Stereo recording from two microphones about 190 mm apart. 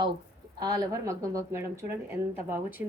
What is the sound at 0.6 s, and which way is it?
Speech, 20° right (ahead or behind).